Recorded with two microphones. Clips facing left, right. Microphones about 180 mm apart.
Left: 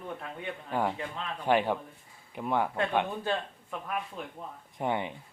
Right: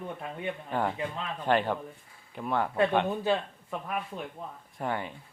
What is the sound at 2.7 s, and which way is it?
Speech, 10° right (ahead or behind).